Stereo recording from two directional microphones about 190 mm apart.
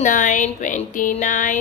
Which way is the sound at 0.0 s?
45° left (ahead or behind).